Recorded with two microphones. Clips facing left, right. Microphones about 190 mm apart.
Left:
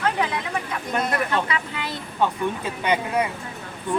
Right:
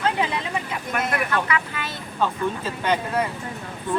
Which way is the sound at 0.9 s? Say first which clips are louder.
Left 1 dB; 25° left (ahead or behind).